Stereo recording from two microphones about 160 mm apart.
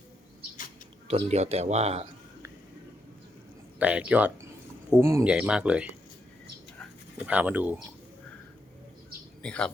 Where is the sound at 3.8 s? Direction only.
10° right (ahead or behind).